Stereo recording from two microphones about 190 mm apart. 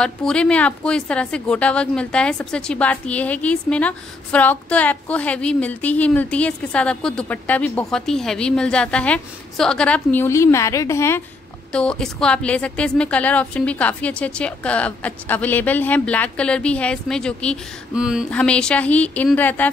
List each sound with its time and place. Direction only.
0.0 s a woman's voice: 5° left (ahead or behind)
17.9 s a sound: 5° right (ahead or behind)
18.3 s a woman's voice: 5° left (ahead or behind)